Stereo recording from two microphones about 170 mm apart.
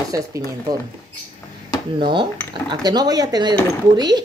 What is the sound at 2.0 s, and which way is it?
Speech, 25° right (ahead or behind).